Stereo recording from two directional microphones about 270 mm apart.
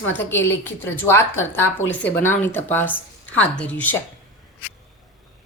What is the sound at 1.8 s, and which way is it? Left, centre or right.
Speech, left.